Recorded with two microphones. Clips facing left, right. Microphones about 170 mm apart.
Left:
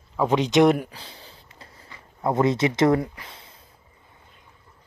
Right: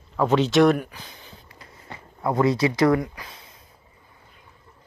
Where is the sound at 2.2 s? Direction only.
25° left (ahead or behind).